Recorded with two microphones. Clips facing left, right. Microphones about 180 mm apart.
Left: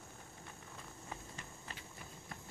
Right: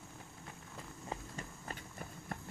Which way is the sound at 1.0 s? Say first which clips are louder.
Right 7 dB; 40° right (ahead or behind).